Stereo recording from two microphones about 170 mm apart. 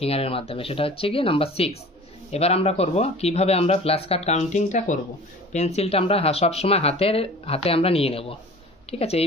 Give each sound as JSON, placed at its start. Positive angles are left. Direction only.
{"t": 0.0, "sound": "speech", "side_deg": 35}